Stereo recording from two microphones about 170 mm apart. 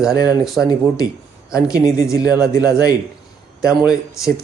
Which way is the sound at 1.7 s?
20° left (ahead or behind).